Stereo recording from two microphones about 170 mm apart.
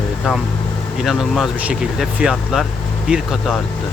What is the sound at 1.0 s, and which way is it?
Speech, centre (ahead or behind).